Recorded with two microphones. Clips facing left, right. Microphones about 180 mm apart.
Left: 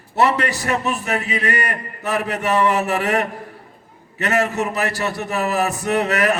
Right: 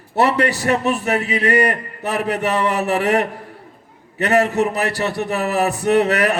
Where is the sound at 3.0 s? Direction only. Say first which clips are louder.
Right 3 dB; 35° right (ahead or behind).